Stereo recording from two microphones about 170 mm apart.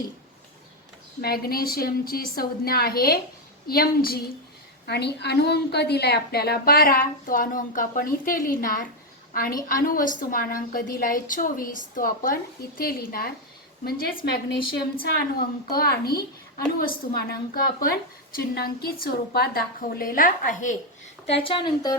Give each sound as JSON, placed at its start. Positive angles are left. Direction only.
{"t": 1.2, "sound": "a woman's voice", "side_deg": 65}
{"t": 4.9, "sound": "a woman's voice", "side_deg": 75}
{"t": 21.2, "sound": "speech", "side_deg": 35}